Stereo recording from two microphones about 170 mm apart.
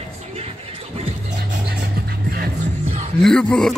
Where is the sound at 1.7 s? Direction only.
65° right (ahead or behind).